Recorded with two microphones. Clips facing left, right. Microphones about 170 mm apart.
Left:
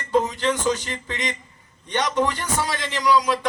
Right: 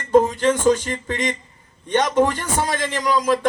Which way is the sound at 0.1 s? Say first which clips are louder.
Right 6 dB; 50° right (ahead or behind).